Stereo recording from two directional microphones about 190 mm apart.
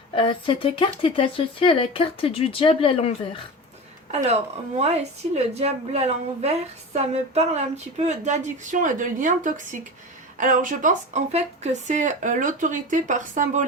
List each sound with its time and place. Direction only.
0.1 s speech: 25° left (ahead or behind)
4.1 s speech: 35° right (ahead or behind)